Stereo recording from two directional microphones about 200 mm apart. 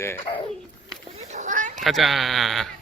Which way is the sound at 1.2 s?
35° right (ahead or behind).